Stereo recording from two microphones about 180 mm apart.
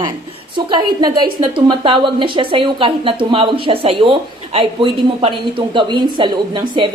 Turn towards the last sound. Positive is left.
turn(degrees=-25)  # may be behind; listen again after turning